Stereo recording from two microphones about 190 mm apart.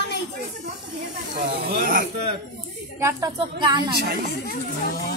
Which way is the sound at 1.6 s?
50° right (ahead or behind).